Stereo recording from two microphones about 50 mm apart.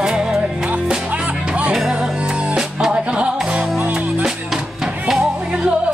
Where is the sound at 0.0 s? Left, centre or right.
Centre.